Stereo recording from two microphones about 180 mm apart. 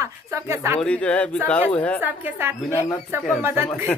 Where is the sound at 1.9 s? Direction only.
10° right (ahead or behind).